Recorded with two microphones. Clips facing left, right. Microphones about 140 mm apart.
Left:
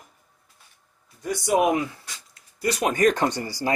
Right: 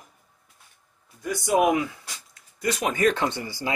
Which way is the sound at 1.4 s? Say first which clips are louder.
Even; 30° left (ahead or behind).